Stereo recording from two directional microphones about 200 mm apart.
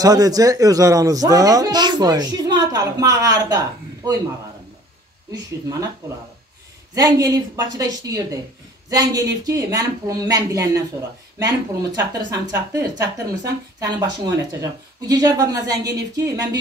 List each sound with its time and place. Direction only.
0.0 s speech: 20° right (ahead or behind)
7.0 s speech: 20° right (ahead or behind)